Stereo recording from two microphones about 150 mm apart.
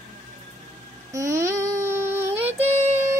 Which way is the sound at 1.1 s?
20° right (ahead or behind).